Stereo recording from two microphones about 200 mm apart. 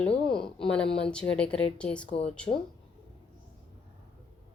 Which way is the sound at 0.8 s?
30° left (ahead or behind).